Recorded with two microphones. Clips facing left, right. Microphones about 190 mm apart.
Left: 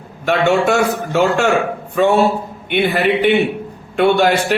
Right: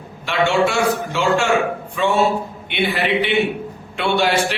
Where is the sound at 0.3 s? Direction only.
45° left (ahead or behind).